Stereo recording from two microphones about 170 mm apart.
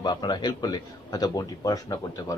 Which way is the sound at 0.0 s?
25° left (ahead or behind).